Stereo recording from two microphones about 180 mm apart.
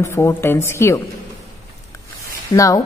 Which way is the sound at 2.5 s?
20° left (ahead or behind).